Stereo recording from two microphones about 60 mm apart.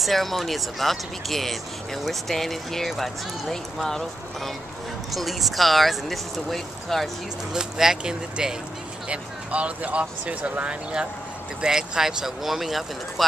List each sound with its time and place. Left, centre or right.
0.0 s speech: centre
7.5 s speech: centre